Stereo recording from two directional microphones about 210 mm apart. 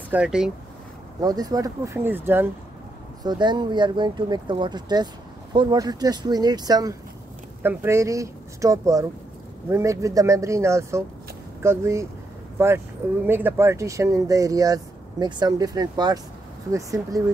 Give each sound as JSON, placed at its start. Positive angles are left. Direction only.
{"t": 0.1, "sound": "speech", "side_deg": -5}
{"t": 1.2, "sound": "speech", "side_deg": -15}
{"t": 3.3, "sound": "speech", "side_deg": -20}